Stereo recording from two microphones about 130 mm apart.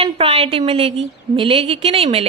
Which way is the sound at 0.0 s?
50° right (ahead or behind).